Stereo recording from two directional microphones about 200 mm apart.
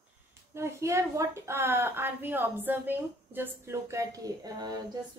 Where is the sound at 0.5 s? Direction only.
15° right (ahead or behind).